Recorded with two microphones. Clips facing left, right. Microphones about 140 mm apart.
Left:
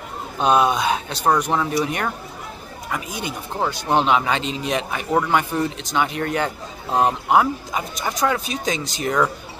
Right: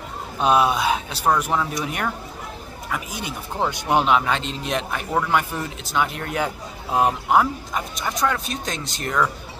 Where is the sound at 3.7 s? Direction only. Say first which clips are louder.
Left 1 dB; 20° right (ahead or behind).